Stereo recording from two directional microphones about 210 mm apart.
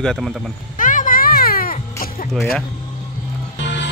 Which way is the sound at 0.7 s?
40° left (ahead or behind).